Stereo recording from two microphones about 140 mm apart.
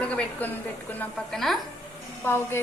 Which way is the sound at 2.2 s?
15° left (ahead or behind).